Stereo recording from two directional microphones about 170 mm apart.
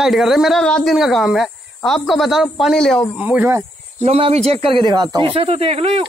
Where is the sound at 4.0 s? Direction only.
35° right (ahead or behind).